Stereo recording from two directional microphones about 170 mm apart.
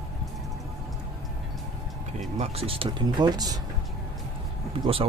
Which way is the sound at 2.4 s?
35° right (ahead or behind).